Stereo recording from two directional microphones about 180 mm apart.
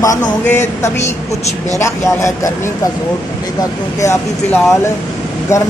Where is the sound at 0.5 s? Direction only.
15° left (ahead or behind).